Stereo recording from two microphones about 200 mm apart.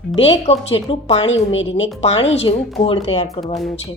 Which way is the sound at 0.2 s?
30° left (ahead or behind).